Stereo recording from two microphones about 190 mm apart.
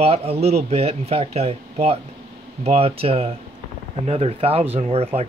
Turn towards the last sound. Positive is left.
turn(degrees=-30)  # may be behind; listen again after turning